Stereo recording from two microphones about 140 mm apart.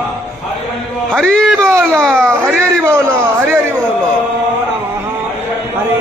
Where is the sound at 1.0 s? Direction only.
5° left (ahead or behind).